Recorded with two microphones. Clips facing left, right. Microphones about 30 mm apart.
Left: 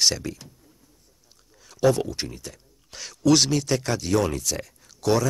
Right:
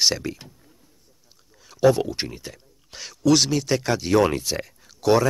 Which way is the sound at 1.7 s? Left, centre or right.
Centre.